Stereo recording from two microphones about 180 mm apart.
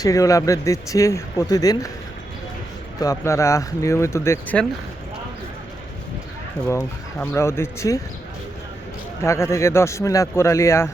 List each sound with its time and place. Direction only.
0.0 s speech: 20° left (ahead or behind)
3.0 s speech: 15° left (ahead or behind)
6.7 s speech: 15° left (ahead or behind)
9.2 s speech: 15° left (ahead or behind)